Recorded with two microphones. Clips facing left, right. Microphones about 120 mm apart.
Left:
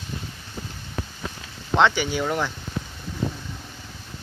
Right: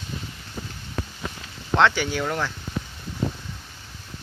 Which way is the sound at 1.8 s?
Centre (ahead or behind).